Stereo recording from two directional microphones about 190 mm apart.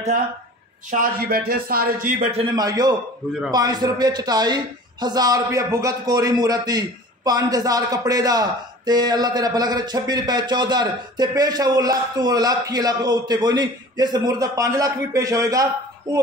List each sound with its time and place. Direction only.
0.8 s a man's voice: 50° right (ahead or behind)
2.5 s a man's voice: 20° right (ahead or behind)